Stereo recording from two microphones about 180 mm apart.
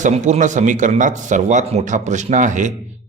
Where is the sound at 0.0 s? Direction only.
45° right (ahead or behind).